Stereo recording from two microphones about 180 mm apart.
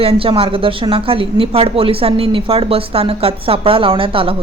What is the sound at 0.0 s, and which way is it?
Speech, 30° right (ahead or behind).